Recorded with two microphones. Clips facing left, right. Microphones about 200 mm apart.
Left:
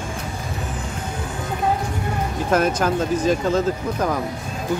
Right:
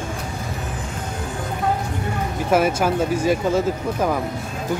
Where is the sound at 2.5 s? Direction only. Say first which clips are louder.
Right 1 dB; 5° right (ahead or behind).